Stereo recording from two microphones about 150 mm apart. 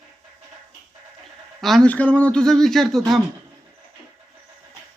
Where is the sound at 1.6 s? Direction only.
5° left (ahead or behind).